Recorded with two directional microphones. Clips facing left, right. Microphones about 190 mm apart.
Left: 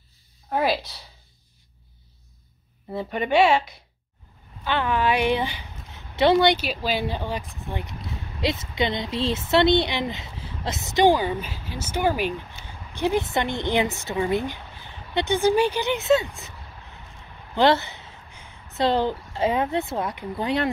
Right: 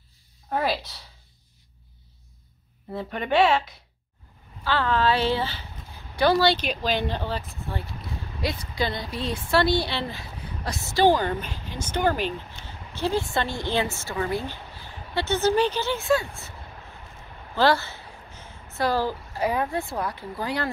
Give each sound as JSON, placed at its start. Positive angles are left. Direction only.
{"t": 2.9, "sound": "speech", "side_deg": 10}
{"t": 4.6, "sound": "speech", "side_deg": 15}
{"t": 6.6, "sound": "speech", "side_deg": 5}
{"t": 17.6, "sound": "speech", "side_deg": 20}